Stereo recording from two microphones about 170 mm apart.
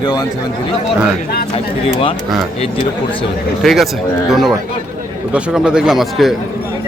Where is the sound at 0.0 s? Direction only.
25° left (ahead or behind).